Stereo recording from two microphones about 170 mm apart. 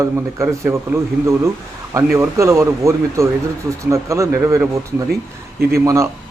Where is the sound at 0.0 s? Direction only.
15° right (ahead or behind).